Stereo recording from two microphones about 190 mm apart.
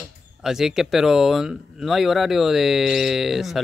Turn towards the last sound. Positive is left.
turn(degrees=0)  # may be behind; listen again after turning